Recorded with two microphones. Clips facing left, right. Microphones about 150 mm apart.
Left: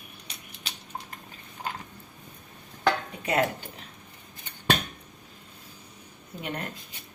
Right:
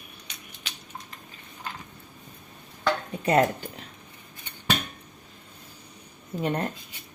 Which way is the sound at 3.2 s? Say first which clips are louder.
Right 5 dB; 40° right (ahead or behind).